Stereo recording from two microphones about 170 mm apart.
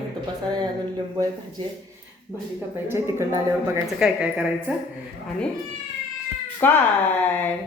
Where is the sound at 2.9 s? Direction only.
15° right (ahead or behind).